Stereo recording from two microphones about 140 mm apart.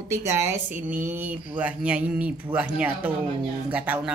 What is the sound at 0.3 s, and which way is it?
Speech, 20° right (ahead or behind).